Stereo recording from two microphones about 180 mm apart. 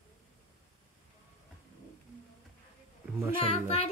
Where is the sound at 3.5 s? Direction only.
30° left (ahead or behind).